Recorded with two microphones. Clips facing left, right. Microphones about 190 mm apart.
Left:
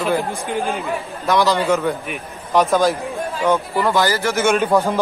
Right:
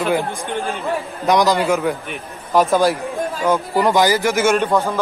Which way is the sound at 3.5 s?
15° right (ahead or behind).